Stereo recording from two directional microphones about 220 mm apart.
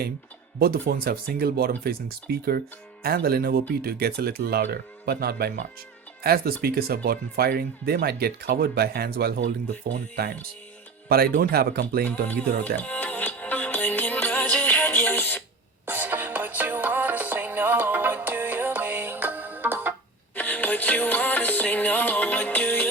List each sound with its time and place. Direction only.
0.6 s speech: 45° right (ahead or behind)
11.1 s speech: 45° right (ahead or behind)
12.0 s music: 5° left (ahead or behind)
15.9 s music: 10° right (ahead or behind)
20.3 s music: 10° left (ahead or behind)